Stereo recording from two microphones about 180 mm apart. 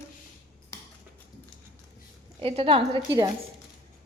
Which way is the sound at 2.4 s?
35° right (ahead or behind).